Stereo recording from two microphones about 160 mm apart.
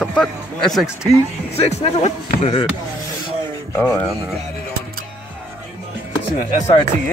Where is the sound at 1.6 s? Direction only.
40° left (ahead or behind).